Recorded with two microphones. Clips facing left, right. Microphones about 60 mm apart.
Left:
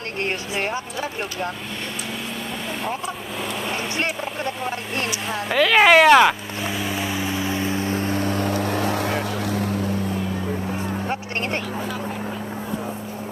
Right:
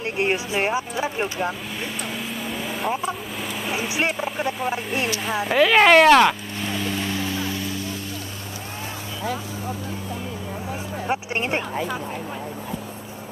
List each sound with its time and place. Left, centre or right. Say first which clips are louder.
0.2 s speech: right 3 dB; centre
3.7 s speech: right 4 dB; centre
5.8 s vehicle: left 1 dB; centre; by 9.8 s left